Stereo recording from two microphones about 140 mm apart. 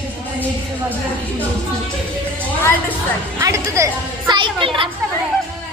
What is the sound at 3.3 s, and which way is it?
Speech, 20° right (ahead or behind).